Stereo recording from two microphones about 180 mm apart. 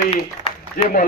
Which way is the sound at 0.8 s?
55° left (ahead or behind).